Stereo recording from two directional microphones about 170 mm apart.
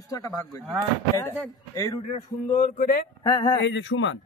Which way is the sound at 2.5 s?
55° left (ahead or behind).